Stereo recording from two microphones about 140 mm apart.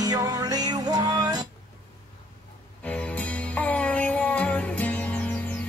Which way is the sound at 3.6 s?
10° left (ahead or behind).